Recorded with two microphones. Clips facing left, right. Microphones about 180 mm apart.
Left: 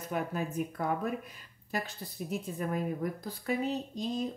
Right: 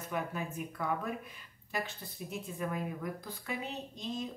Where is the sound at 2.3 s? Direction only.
40° left (ahead or behind).